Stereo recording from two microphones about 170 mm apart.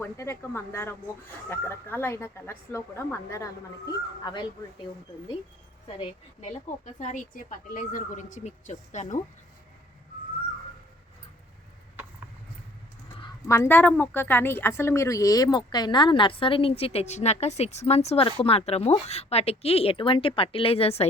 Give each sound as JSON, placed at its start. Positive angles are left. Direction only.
{"t": 0.0, "sound": "speech", "side_deg": 15}
{"t": 6.4, "sound": "a woman's voice", "side_deg": 45}
{"t": 13.5, "sound": "speech", "side_deg": 15}